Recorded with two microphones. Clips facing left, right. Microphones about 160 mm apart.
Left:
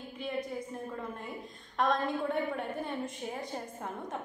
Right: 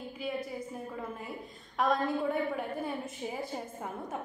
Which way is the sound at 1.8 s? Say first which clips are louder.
Right 1 dB; 5° right (ahead or behind).